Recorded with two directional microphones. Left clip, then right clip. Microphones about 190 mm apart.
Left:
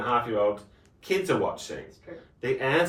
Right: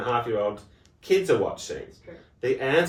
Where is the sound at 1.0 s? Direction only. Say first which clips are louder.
Right 4 dB; 15° right (ahead or behind).